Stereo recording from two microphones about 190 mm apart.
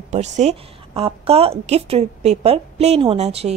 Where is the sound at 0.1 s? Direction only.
35° right (ahead or behind).